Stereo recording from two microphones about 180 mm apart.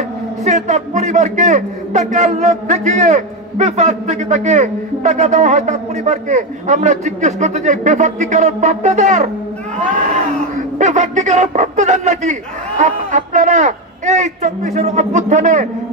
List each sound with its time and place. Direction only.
0.5 s a man's voice: 40° right (ahead or behind)